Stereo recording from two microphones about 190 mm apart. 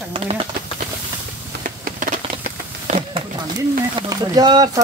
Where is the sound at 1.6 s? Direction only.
45° right (ahead or behind).